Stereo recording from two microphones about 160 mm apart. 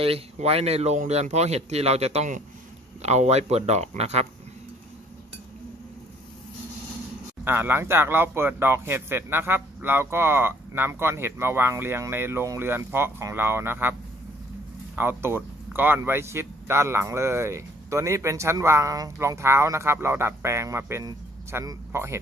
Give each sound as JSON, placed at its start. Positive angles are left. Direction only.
{"t": 0.0, "sound": "speech", "side_deg": -40}
{"t": 7.4, "sound": "speech", "side_deg": -15}
{"t": 15.0, "sound": "speech", "side_deg": -15}